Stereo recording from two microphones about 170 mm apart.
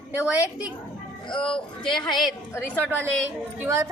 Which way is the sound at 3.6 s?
15° right (ahead or behind).